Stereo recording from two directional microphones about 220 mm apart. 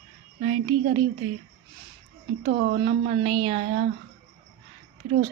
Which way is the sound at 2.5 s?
40° right (ahead or behind).